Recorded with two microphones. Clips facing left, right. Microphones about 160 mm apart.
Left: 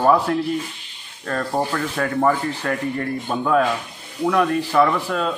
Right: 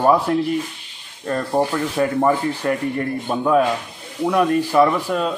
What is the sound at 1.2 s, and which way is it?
Rub, 20° right (ahead or behind).